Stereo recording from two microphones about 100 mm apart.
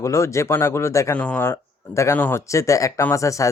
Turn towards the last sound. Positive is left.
turn(degrees=30)  # may be behind; listen again after turning